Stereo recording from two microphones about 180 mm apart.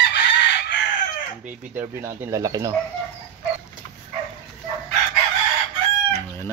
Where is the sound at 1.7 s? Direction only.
15° right (ahead or behind).